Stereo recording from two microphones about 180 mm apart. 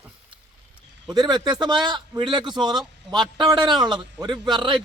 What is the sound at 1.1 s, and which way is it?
A man's voice, 25° right (ahead or behind).